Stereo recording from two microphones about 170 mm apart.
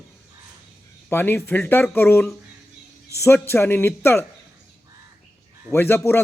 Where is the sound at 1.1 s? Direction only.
15° left (ahead or behind).